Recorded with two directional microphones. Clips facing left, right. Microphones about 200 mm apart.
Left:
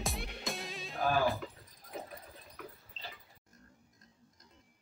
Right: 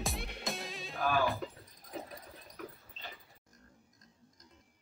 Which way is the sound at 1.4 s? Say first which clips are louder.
Right 3 dB; 35° right (ahead or behind).